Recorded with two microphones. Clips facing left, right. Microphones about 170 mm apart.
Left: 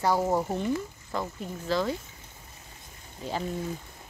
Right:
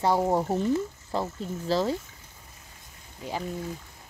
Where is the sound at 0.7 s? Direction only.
30° right (ahead or behind).